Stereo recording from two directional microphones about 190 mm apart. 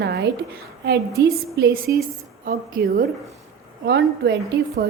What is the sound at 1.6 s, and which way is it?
A woman's voice, 55° right (ahead or behind).